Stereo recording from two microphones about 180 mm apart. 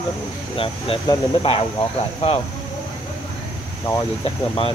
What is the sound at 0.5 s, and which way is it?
Speech, 30° left (ahead or behind).